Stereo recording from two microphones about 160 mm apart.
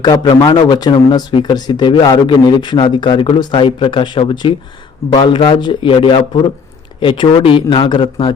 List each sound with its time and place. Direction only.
0.0 s speech: 25° left (ahead or behind)